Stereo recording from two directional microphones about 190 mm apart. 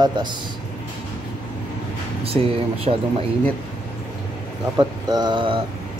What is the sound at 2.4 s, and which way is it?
Speech, 35° right (ahead or behind).